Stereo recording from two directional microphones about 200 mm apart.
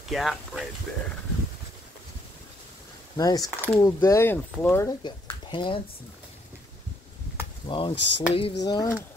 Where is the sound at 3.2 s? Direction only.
20° left (ahead or behind).